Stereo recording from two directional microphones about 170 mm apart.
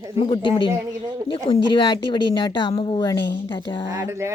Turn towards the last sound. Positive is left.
turn(degrees=-15)  # may be behind; listen again after turning